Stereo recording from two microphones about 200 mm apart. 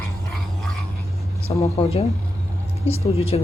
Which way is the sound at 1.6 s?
30° left (ahead or behind).